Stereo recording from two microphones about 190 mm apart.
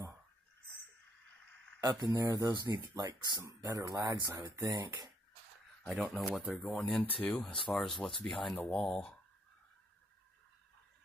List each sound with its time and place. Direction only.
1.8 s speech: 20° right (ahead or behind)
5.9 s speech: centre (ahead or behind)